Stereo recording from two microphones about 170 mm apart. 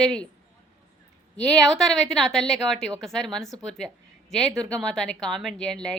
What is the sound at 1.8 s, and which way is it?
Speech, centre (ahead or behind).